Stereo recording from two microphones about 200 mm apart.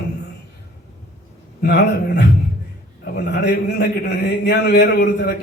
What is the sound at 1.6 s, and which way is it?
A man's voice, 55° left (ahead or behind).